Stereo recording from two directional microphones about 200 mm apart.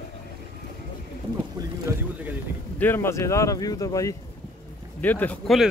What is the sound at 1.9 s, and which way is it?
Speech, 10° right (ahead or behind).